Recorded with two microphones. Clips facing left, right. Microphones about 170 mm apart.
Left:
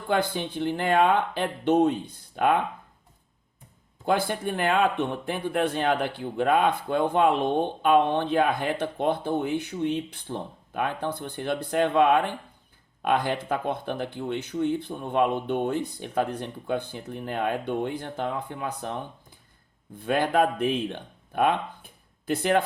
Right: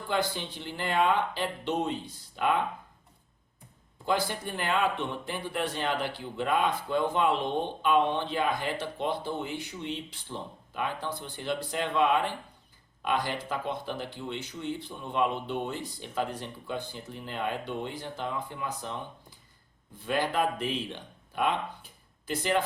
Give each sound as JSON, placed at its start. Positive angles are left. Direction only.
{"t": 0.1, "sound": "speech", "side_deg": 55}
{"t": 4.0, "sound": "speech", "side_deg": 55}